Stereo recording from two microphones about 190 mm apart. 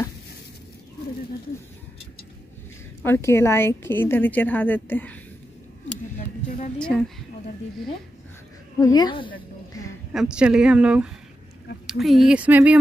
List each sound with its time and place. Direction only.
3.0 s a woman's voice: 15° left (ahead or behind)
6.8 s a woman's voice: 5° left (ahead or behind)
8.7 s a woman's voice: 20° left (ahead or behind)
10.1 s a woman's voice: 5° right (ahead or behind)